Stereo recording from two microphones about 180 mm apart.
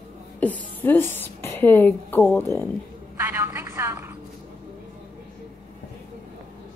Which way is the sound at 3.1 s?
15° right (ahead or behind).